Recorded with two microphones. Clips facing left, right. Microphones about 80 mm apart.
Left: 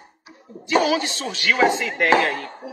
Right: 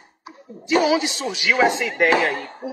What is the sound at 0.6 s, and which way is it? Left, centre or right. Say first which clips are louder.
A man's voice: right 1 dB; centre.